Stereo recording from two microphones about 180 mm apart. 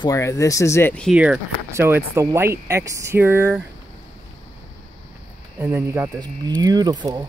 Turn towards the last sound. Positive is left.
turn(degrees=-25)  # may be behind; listen again after turning